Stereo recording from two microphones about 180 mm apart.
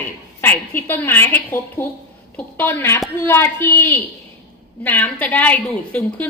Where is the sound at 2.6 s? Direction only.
10° left (ahead or behind).